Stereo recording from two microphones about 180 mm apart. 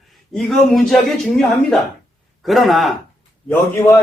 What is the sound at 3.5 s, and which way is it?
Speech, 15° left (ahead or behind).